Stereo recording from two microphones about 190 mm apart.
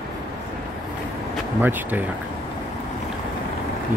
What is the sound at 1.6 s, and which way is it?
Speech, 10° right (ahead or behind).